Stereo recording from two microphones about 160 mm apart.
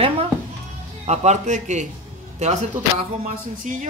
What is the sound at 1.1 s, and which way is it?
A man's voice, 45° right (ahead or behind).